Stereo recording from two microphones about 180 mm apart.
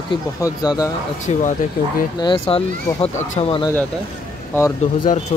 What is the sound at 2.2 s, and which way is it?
A man's voice, 25° left (ahead or behind).